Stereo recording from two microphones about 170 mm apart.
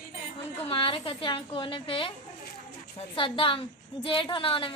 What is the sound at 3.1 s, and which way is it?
A woman's voice, 30° left (ahead or behind).